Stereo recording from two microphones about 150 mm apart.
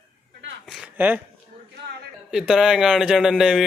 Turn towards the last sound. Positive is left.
turn(degrees=-5)  # may be behind; listen again after turning